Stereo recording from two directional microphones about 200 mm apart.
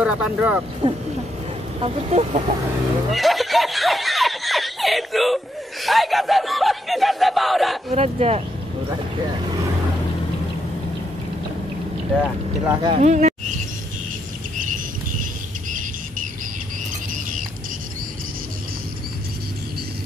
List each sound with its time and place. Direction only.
0.0 s speech: 5° right (ahead or behind)
0.8 s speech: 25° right (ahead or behind)
3.1 s speech: centre (ahead or behind)
7.9 s speech: 30° right (ahead or behind)
12.6 s speech: 25° right (ahead or behind)